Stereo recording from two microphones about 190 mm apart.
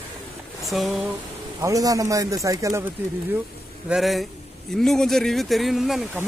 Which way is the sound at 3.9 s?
Centre (ahead or behind).